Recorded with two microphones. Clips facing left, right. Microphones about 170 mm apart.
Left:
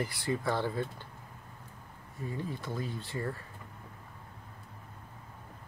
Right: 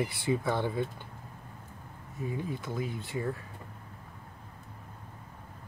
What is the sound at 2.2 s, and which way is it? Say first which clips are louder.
Speech: right 2 dB; 15° right (ahead or behind).